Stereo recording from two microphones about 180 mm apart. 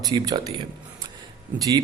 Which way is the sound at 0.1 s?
25° right (ahead or behind).